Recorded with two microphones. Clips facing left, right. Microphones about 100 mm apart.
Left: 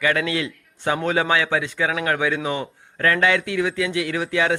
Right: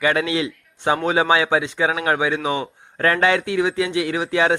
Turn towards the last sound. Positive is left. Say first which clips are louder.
# right 2 dB
turn(degrees=-30)  # may be behind; listen again after turning